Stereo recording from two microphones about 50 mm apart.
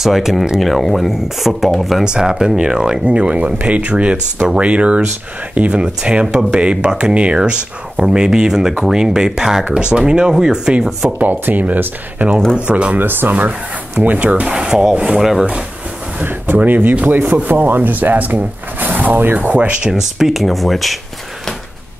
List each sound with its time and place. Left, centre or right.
0.0 s speech: centre
2.0 s speech: centre
11.1 s speech: right
12.5 s speech: right
13.0 s speech: right
14.5 s speech: centre
16.4 s speech: right
19.8 s speech: centre